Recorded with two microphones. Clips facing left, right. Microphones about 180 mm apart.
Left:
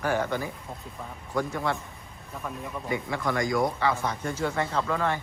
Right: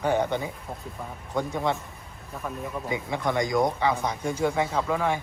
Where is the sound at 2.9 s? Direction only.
20° right (ahead or behind).